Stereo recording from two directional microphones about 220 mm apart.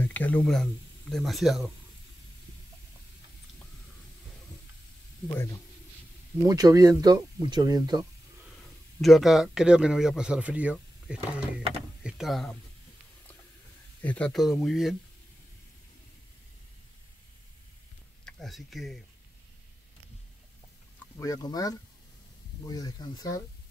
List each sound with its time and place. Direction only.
0.0 s speech: 5° left (ahead or behind)
5.3 s speech: 15° left (ahead or behind)
6.4 s speech: 15° right (ahead or behind)
9.0 s speech: centre (ahead or behind)
14.0 s speech: 5° left (ahead or behind)
18.2 s speech: centre (ahead or behind)
21.2 s speech: 15° left (ahead or behind)